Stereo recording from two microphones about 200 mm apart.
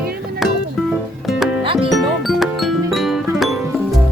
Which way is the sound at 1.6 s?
25° right (ahead or behind).